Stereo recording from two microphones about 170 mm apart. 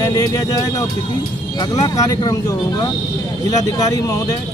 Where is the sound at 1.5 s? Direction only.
25° left (ahead or behind).